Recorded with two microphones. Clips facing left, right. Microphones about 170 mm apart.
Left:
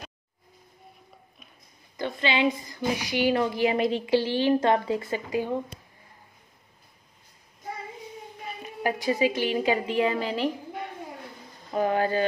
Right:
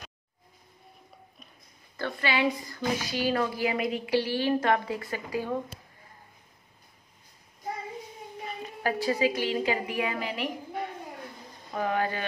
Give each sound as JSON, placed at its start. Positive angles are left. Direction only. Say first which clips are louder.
{"t": 2.0, "sound": "a woman's voice", "louder": "left 2 dB", "side_deg": 20}
{"t": 8.8, "sound": "a woman's voice", "louder": "left 2 dB", "side_deg": 15}
{"t": 11.7, "sound": "speech", "louder": "left 5 dB", "side_deg": 30}